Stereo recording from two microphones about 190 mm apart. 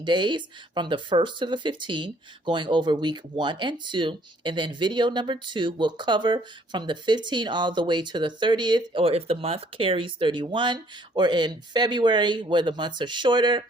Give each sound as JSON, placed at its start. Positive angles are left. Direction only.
{"t": 0.0, "sound": "speech", "side_deg": -25}